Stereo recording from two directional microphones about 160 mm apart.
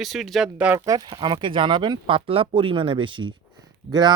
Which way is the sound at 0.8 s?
25° right (ahead or behind).